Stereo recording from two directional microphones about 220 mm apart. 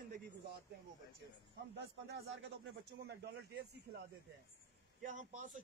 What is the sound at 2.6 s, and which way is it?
A man's voice, 50° right (ahead or behind).